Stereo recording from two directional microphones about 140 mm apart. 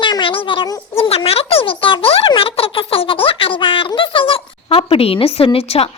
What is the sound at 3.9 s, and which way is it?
A woman's voice, 40° left (ahead or behind).